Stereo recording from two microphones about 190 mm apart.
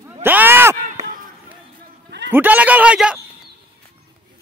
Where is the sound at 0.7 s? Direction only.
40° right (ahead or behind).